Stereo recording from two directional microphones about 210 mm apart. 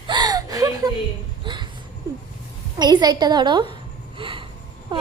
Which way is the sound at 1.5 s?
25° right (ahead or behind).